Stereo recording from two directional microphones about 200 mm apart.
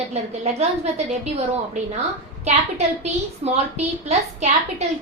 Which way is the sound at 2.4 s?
35° right (ahead or behind).